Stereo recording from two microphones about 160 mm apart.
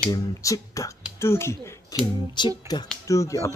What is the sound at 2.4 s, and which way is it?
Speech, 30° left (ahead or behind).